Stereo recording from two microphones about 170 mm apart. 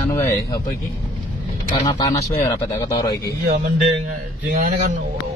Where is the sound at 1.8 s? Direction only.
25° left (ahead or behind).